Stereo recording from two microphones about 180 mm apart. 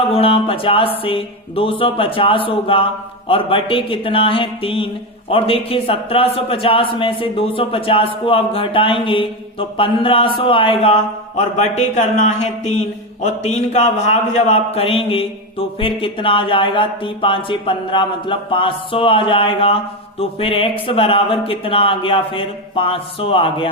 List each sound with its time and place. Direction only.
0.1 s a man's voice: 30° left (ahead or behind)